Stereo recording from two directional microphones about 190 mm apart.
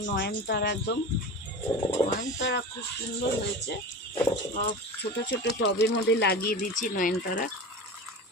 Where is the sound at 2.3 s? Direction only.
65° left (ahead or behind).